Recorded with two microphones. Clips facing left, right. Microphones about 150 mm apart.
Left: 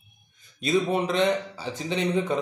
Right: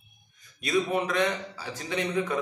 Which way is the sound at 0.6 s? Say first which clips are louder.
Left 3 dB; 25° left (ahead or behind).